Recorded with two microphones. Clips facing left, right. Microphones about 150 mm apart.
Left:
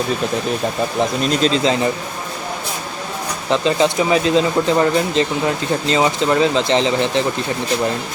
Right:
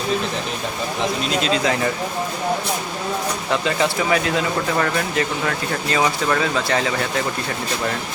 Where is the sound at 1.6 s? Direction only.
20° left (ahead or behind).